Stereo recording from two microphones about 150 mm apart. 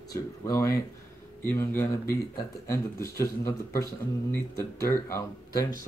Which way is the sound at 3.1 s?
20° left (ahead or behind).